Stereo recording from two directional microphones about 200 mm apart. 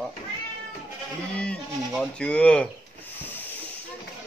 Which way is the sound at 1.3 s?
5° left (ahead or behind).